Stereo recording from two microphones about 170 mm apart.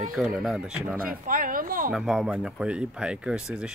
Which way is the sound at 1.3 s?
55° right (ahead or behind).